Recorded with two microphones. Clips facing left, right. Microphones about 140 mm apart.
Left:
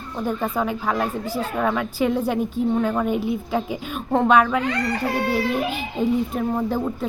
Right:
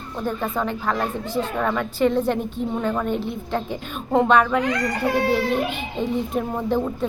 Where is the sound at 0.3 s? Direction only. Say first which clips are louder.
Left 1 dB; 10° left (ahead or behind).